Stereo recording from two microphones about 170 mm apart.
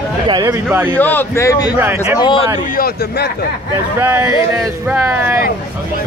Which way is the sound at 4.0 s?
15° right (ahead or behind).